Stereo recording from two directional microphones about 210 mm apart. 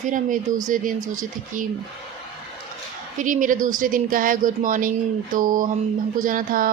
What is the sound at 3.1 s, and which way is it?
Speech, 40° right (ahead or behind).